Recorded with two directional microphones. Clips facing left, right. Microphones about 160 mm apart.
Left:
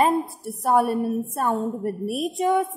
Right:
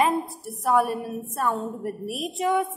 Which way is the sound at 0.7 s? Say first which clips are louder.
Left 2 dB; 40° left (ahead or behind).